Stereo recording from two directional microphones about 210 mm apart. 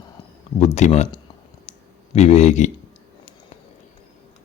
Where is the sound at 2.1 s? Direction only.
30° left (ahead or behind).